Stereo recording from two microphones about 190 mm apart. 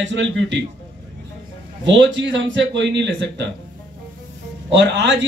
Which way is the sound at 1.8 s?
75° right (ahead or behind).